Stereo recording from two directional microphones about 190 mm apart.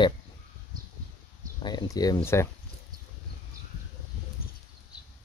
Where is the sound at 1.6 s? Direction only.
25° left (ahead or behind).